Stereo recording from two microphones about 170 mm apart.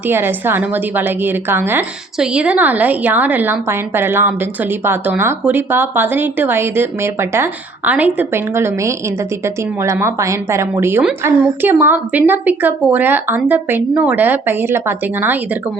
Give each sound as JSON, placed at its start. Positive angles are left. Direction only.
{"t": 0.1, "sound": "a woman's voice", "side_deg": -10}